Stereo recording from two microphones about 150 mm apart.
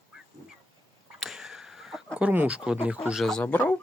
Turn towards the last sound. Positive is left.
turn(degrees=10)  # may be behind; listen again after turning